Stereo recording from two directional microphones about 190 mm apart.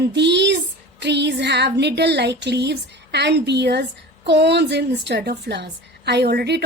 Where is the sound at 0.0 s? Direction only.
65° right (ahead or behind).